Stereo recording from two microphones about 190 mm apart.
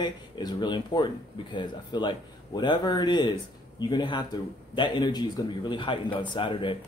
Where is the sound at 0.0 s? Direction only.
20° left (ahead or behind).